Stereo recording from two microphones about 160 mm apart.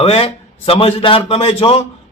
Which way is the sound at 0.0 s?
35° left (ahead or behind).